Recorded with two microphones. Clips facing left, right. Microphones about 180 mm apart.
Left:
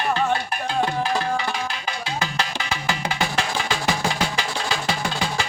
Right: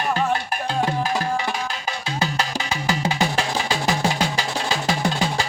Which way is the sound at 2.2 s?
40° right (ahead or behind).